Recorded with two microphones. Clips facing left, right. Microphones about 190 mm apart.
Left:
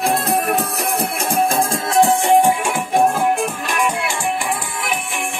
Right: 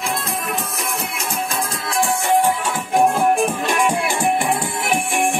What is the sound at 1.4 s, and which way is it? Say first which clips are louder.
Music: left 8 dB; 50° left (ahead or behind).